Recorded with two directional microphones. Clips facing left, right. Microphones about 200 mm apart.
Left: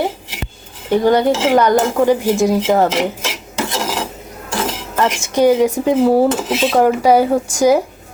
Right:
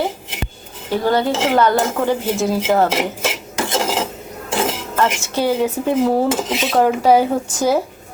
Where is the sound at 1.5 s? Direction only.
15° left (ahead or behind).